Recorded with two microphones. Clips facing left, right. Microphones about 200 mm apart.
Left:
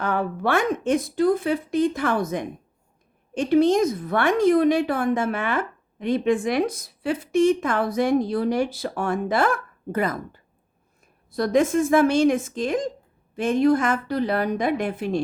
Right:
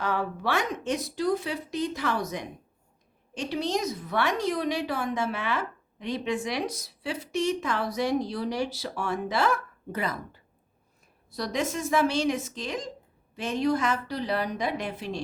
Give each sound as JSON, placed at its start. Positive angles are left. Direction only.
{"t": 0.0, "sound": "a woman's voice", "side_deg": 50}